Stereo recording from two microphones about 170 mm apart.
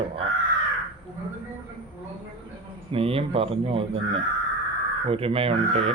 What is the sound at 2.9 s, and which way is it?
Speech, 35° right (ahead or behind).